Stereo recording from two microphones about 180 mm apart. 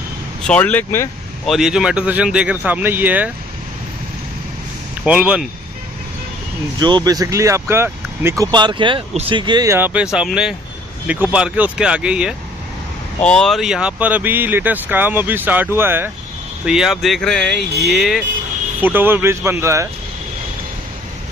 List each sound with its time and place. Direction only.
0.5 s speech: 10° left (ahead or behind)
1.5 s speech: 5° right (ahead or behind)
5.0 s speech: 5° right (ahead or behind)
6.8 s speech: 25° right (ahead or behind)
8.5 s speech: 25° right (ahead or behind); by 18.2 s centre (ahead or behind)
18.8 s speech: 10° right (ahead or behind)